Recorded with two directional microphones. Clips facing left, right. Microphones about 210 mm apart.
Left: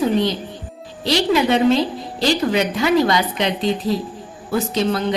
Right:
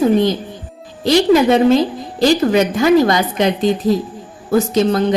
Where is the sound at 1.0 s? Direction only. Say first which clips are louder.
Right 6 dB; 45° right (ahead or behind).